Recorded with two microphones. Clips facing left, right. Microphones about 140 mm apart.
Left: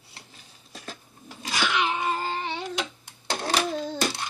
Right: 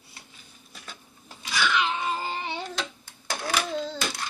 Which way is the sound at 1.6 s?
15° left (ahead or behind).